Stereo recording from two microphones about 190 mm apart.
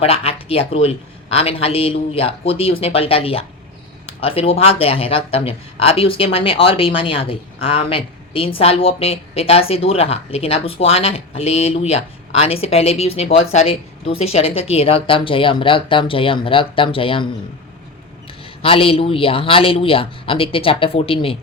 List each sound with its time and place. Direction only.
0.0 s speech: 30° left (ahead or behind)
18.6 s speech: 30° left (ahead or behind)